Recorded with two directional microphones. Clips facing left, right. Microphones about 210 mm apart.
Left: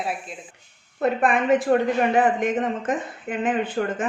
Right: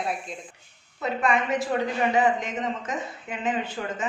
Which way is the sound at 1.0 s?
55° left (ahead or behind).